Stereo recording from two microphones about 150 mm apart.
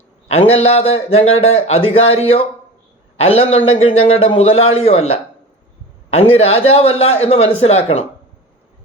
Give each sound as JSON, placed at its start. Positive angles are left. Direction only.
{"t": 0.5, "sound": "a man's voice", "side_deg": 40}